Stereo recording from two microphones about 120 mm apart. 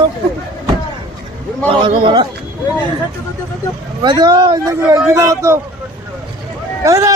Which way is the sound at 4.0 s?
35° right (ahead or behind).